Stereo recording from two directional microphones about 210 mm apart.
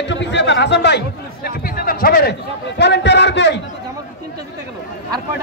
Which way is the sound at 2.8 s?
55° left (ahead or behind).